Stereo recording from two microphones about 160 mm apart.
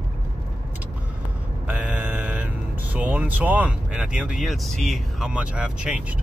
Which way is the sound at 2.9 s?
10° right (ahead or behind).